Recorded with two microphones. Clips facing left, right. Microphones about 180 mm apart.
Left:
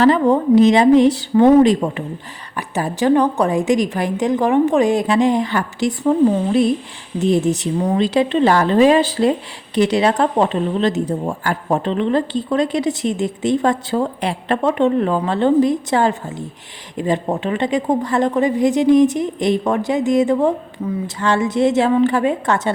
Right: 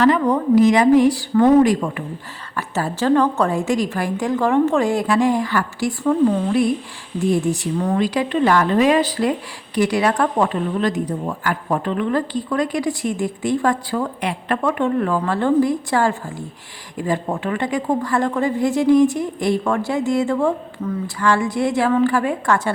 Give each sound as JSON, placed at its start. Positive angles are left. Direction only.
{"t": 0.0, "sound": "speech", "side_deg": 30}